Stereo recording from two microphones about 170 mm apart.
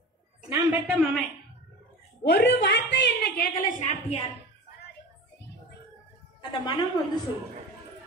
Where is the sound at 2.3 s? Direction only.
90° left; by 4.2 s 40° left (ahead or behind).